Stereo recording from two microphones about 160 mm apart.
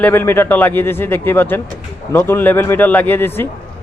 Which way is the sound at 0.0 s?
15° left (ahead or behind).